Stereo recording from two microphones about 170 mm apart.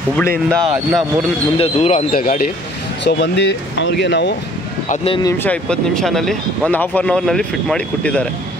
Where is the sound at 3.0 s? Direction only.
85° left.